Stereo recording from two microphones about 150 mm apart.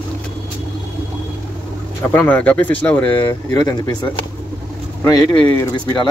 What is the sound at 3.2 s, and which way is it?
Speech, 25° left (ahead or behind).